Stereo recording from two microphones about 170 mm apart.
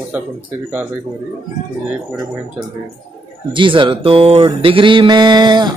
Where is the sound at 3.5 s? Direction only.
30° right (ahead or behind).